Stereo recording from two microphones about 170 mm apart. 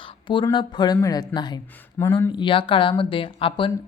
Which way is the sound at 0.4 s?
25° left (ahead or behind).